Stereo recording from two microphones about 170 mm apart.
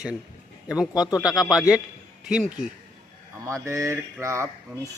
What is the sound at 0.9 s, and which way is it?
Speech, 25° left (ahead or behind).